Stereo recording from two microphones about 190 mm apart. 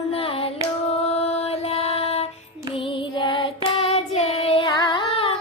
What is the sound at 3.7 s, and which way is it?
Carnatic music, 30° left (ahead or behind).